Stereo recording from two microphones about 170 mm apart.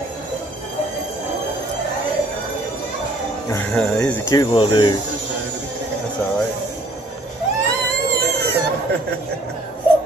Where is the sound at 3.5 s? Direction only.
10° left (ahead or behind).